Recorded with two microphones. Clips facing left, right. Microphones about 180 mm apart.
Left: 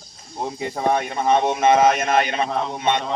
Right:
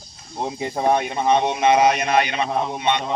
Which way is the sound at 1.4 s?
45° left (ahead or behind).